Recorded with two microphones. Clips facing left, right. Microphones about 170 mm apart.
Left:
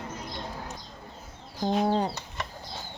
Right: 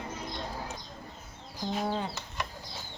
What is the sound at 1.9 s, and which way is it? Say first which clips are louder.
Speech: left 7 dB; 40° left (ahead or behind).